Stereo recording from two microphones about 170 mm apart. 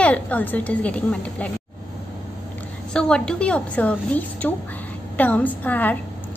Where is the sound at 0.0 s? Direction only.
10° left (ahead or behind).